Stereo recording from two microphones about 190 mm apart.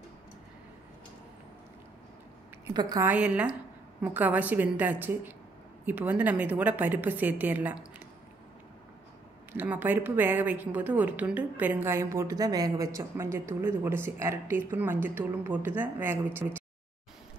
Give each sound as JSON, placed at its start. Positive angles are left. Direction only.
{"t": 2.7, "sound": "a woman's voice", "side_deg": -20}
{"t": 3.1, "sound": "a woman's voice", "side_deg": -5}
{"t": 9.5, "sound": "a woman's voice", "side_deg": -10}